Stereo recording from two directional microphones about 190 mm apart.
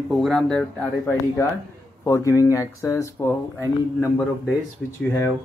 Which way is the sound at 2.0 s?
15° left (ahead or behind).